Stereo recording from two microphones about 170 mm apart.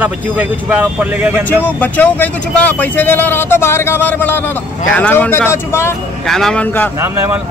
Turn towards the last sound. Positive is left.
turn(degrees=-15)  # may be behind; listen again after turning